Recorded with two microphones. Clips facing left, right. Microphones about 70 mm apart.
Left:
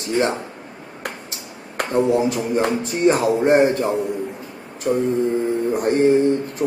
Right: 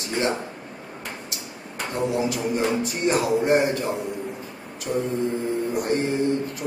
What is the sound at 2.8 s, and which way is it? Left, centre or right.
A man's voice, left.